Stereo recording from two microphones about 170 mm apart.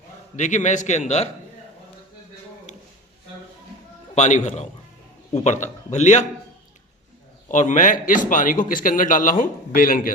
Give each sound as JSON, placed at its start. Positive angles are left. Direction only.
{"t": 0.3, "sound": "a man's voice", "side_deg": 45}
{"t": 4.1, "sound": "a man's voice", "side_deg": 45}
{"t": 7.4, "sound": "a man's voice", "side_deg": 45}